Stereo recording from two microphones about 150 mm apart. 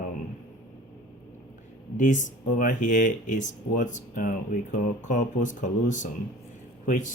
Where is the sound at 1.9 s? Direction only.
55° left (ahead or behind).